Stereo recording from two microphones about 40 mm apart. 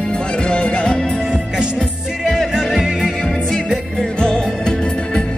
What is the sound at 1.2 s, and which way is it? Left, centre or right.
Music, centre.